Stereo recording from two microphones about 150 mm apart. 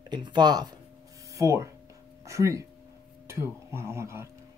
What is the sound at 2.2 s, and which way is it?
Speech, 20° right (ahead or behind).